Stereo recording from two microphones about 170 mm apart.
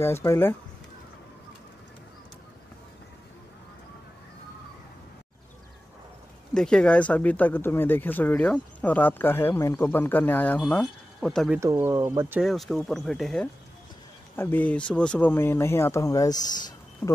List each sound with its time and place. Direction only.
0.0 s speech: 15° left (ahead or behind)
6.5 s speech: 5° left (ahead or behind)
11.6 s speech: 20° right (ahead or behind)
12.4 s speech: centre (ahead or behind); by 16.5 s 20° left (ahead or behind)